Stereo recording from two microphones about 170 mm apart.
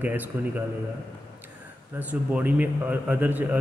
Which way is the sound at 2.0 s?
10° right (ahead or behind).